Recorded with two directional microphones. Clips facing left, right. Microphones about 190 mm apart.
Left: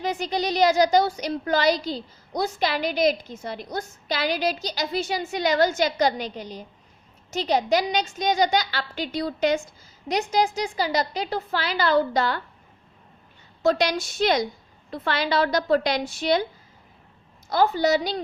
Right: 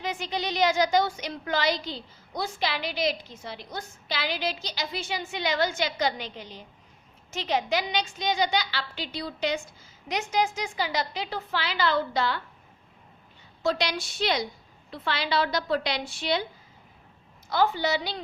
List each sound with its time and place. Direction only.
0.0 s a woman's voice: 40° left (ahead or behind)
10.1 s a woman's voice: 35° left (ahead or behind)
13.6 s a woman's voice: 45° left (ahead or behind)
17.5 s a woman's voice: 40° left (ahead or behind)